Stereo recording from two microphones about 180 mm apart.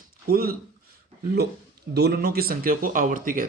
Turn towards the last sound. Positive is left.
turn(degrees=-50)  # may be behind; listen again after turning